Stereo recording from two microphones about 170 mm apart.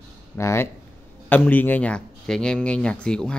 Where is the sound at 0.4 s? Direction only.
15° left (ahead or behind).